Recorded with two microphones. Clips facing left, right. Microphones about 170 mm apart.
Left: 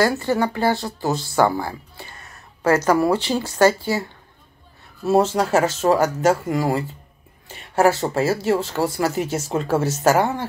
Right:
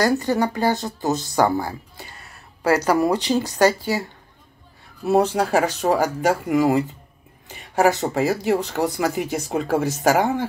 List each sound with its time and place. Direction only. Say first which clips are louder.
0.2 s speech: even; 15° right (ahead or behind)
5.0 s speech: left 1 dB; 15° right (ahead or behind)